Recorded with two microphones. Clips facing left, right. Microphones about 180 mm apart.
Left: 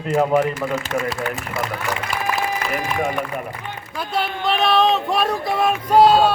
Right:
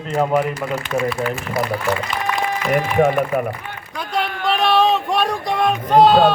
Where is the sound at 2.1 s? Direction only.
10° left (ahead or behind).